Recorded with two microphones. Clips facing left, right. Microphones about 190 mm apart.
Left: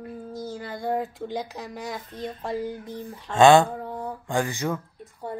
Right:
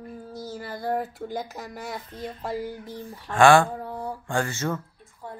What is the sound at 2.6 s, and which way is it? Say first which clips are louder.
Speech: left 2 dB; 20° left (ahead or behind).